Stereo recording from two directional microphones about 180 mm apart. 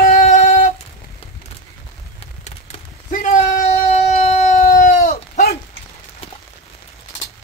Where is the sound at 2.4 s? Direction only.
40° left (ahead or behind).